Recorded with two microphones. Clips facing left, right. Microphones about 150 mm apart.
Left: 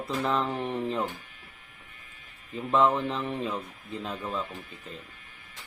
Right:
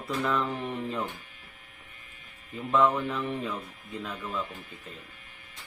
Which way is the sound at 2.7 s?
25° left (ahead or behind).